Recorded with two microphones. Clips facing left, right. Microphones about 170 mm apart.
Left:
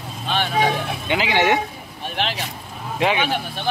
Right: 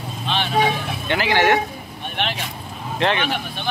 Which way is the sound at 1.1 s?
15° left (ahead or behind).